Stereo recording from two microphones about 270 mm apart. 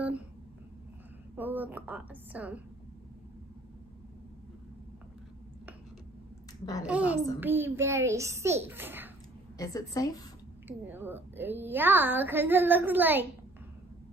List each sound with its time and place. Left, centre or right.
1.3 s a woman's voice: centre
6.6 s a woman's voice: centre
6.9 s a woman's voice: centre
9.6 s a woman's voice: centre
10.9 s a woman's voice: centre